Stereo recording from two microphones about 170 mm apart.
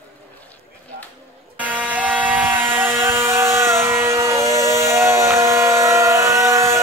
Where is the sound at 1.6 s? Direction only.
10° right (ahead or behind).